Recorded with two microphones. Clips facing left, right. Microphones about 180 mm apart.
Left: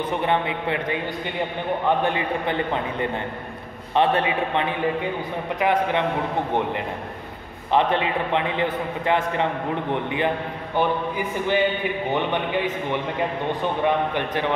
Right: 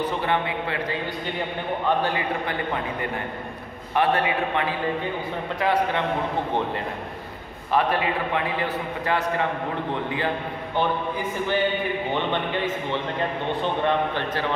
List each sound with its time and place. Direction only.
0.2 s a man's voice: 20° left (ahead or behind)
7.7 s a man's voice: 20° left (ahead or behind)
13.8 s speech: 15° left (ahead or behind)